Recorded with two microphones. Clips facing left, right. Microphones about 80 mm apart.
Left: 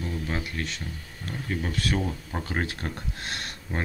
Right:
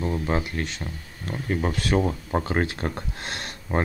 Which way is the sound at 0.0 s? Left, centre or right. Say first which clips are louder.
Right 6 dB; right.